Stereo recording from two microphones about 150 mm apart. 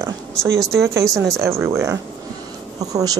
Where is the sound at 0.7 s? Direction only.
20° right (ahead or behind).